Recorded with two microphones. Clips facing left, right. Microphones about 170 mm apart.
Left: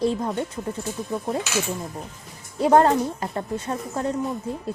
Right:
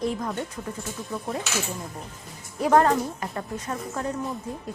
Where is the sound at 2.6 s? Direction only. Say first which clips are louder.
Left 3 dB; 25° left (ahead or behind).